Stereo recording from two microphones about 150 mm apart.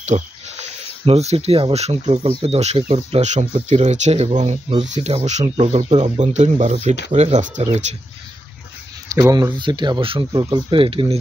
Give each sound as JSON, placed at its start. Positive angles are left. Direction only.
{"t": 0.0, "sound": "speech", "side_deg": -50}
{"t": 9.1, "sound": "speech", "side_deg": -25}